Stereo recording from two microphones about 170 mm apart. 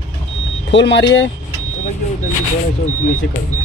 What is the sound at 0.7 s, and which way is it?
Speech, 90° left.